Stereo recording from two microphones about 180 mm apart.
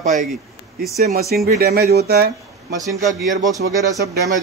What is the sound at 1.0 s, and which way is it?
Speech, 60° right (ahead or behind).